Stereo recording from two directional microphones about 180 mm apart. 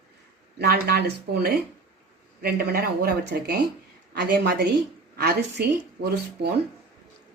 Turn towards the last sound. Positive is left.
turn(degrees=-65)  # may be behind; listen again after turning